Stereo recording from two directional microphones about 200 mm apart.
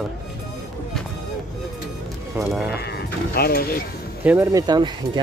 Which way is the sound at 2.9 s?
50° left (ahead or behind).